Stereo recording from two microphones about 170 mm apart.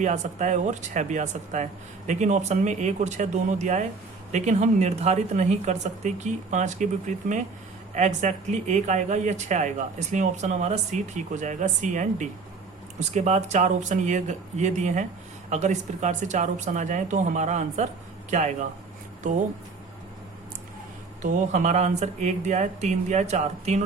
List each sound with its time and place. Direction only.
0.0 s speech: 45° right (ahead or behind)
21.2 s speech: 45° right (ahead or behind)